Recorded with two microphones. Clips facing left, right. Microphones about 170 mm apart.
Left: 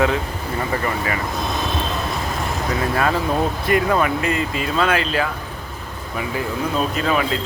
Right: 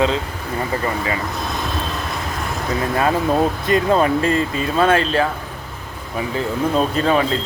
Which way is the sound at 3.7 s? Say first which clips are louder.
Right 1 dB; 25° right (ahead or behind).